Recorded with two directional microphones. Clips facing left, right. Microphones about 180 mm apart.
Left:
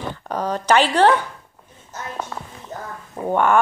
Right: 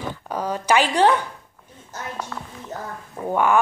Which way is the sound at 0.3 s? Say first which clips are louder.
Left 2 dB; 10° right (ahead or behind).